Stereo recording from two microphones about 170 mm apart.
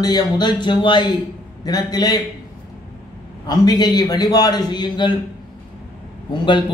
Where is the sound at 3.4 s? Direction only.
25° left (ahead or behind).